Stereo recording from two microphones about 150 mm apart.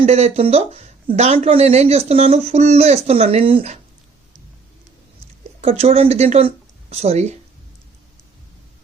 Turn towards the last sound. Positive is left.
turn(degrees=-45)  # may be behind; listen again after turning